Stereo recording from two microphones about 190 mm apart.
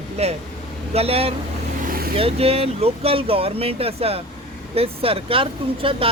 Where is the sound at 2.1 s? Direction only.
30° right (ahead or behind).